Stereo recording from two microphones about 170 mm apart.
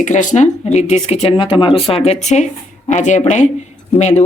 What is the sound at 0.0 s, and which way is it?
A woman's voice, 45° left (ahead or behind).